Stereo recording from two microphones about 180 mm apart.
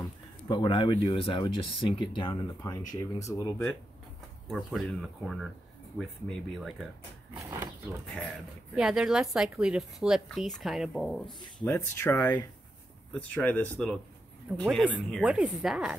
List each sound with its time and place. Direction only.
0.5 s speech: 25° left (ahead or behind)
3.2 s speech: 10° left (ahead or behind)
4.5 s speech: centre (ahead or behind)
7.3 s speech: 15° right (ahead or behind)
8.1 s speech: centre (ahead or behind)
11.6 s speech: 10° left (ahead or behind); by 16.0 s 5° right (ahead or behind)